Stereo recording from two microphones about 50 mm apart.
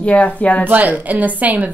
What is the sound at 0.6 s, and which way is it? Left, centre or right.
A woman's voice, right.